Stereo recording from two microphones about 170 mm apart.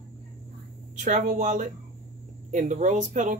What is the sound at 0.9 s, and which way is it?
Speech, 45° right (ahead or behind).